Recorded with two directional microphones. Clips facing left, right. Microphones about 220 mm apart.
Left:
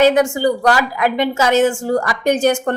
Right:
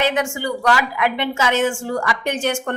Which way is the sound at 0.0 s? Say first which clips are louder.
Left 8 dB; 40° left (ahead or behind).